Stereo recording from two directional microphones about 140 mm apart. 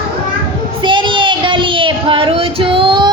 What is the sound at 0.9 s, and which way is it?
Child singing, 35° right (ahead or behind).